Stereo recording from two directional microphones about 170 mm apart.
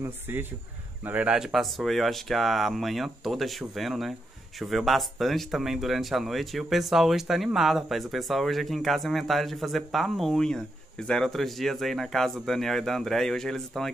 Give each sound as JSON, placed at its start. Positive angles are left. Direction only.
{"t": 0.0, "sound": "speech", "side_deg": -10}